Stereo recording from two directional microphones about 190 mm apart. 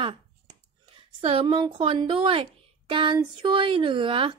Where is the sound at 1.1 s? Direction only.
25° right (ahead or behind).